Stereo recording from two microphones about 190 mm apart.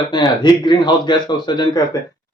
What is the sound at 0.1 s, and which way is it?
Speech, 25° left (ahead or behind).